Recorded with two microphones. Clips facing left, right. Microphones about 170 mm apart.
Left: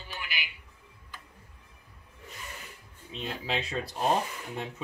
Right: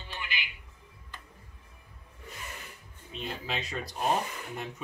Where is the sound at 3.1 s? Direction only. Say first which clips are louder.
Left 2 dB; 25° left (ahead or behind).